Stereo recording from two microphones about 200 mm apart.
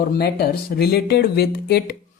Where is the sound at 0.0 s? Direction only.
50° left (ahead or behind).